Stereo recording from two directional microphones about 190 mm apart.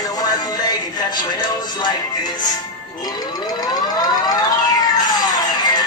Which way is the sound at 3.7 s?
20° left (ahead or behind).